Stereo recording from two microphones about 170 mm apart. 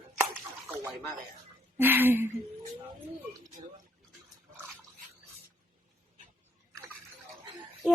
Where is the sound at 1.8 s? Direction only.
10° right (ahead or behind).